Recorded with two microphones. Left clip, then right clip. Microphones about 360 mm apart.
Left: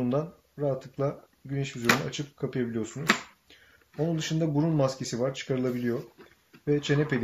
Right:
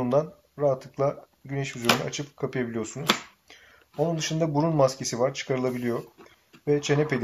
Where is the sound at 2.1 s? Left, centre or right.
Centre.